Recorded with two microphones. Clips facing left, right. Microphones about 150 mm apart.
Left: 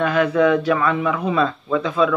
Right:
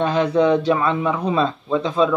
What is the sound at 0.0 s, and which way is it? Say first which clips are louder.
Speech: even; 25° right (ahead or behind).